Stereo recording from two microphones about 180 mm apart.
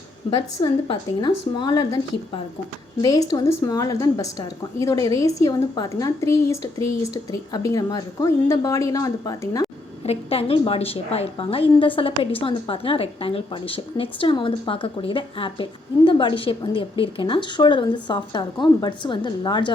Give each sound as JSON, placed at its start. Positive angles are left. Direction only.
{"t": 0.3, "sound": "a woman's voice", "side_deg": 25}
{"t": 10.1, "sound": "a woman's voice", "side_deg": 30}